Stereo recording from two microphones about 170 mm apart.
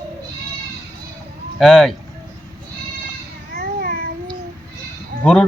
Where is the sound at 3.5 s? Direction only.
65° right (ahead or behind).